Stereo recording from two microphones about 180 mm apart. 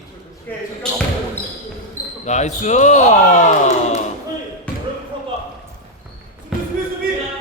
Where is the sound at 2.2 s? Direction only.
40° left (ahead or behind).